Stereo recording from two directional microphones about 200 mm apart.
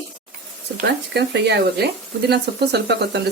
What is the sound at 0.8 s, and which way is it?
Speech, 55° right (ahead or behind).